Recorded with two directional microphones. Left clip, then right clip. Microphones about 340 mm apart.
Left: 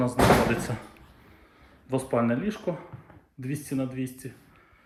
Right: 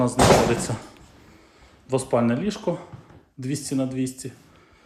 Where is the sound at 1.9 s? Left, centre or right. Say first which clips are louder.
Right 4 dB; centre.